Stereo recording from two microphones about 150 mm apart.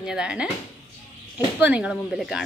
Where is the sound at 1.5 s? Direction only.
10° right (ahead or behind).